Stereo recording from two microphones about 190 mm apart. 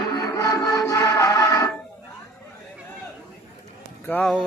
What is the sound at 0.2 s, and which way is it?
Music, 15° left (ahead or behind).